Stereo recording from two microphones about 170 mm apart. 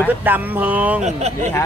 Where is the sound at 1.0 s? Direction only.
40° right (ahead or behind).